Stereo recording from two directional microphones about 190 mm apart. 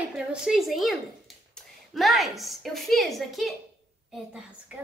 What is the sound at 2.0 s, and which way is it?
Speech, centre (ahead or behind).